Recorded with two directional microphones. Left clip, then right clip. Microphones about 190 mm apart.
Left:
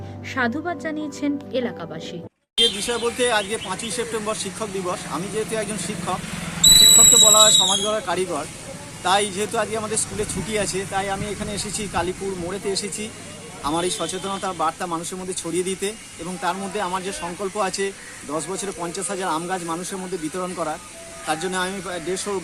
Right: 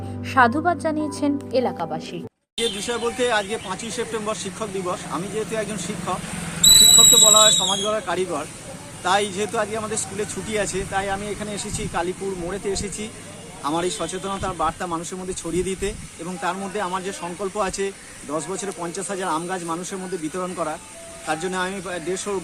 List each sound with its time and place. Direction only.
0.3 s a woman's voice: 15° right (ahead or behind)